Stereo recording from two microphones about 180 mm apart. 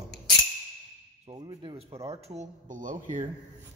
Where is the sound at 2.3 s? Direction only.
45° right (ahead or behind).